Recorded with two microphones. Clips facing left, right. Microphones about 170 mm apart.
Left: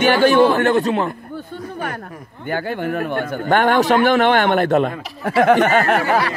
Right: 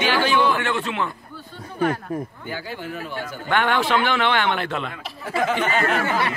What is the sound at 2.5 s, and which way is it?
Speech, 55° left (ahead or behind).